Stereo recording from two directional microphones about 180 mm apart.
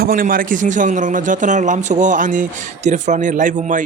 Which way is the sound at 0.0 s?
55° right (ahead or behind).